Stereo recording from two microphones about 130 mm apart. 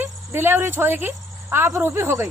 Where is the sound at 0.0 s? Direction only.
15° right (ahead or behind).